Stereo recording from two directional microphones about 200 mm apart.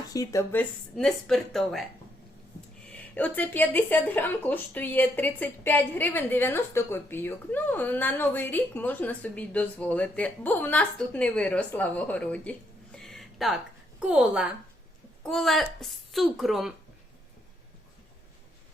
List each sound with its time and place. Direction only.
0.1 s speech: 15° left (ahead or behind); by 1.9 s centre (ahead or behind)
2.9 s speech: 5° left (ahead or behind)